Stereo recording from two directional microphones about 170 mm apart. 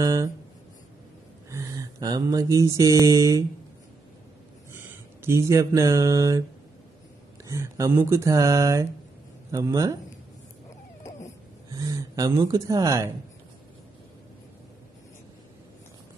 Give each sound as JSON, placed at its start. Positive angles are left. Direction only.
{"t": 0.0, "sound": "speech", "side_deg": -20}
{"t": 1.5, "sound": "a sound", "side_deg": -20}
{"t": 4.7, "sound": "speech", "side_deg": -15}
{"t": 7.4, "sound": "speech", "side_deg": -20}
{"t": 11.7, "sound": "speech", "side_deg": -20}